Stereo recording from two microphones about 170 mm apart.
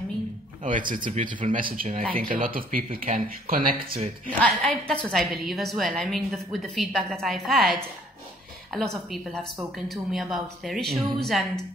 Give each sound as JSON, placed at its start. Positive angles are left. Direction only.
{"t": 0.7, "sound": "speech", "side_deg": -50}
{"t": 4.3, "sound": "a woman's voice", "side_deg": 5}